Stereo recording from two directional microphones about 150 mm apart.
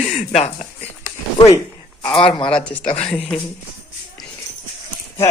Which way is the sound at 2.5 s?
5° left (ahead or behind).